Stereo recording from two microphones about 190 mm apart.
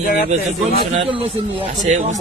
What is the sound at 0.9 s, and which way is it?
Speech, 30° right (ahead or behind).